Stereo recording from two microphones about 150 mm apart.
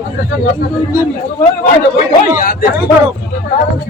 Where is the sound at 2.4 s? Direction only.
65° left (ahead or behind).